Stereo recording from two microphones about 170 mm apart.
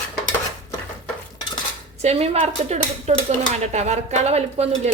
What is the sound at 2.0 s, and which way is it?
Speech, 40° right (ahead or behind).